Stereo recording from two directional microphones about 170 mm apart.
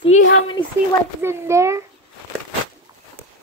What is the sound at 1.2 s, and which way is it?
Speech, 15° right (ahead or behind).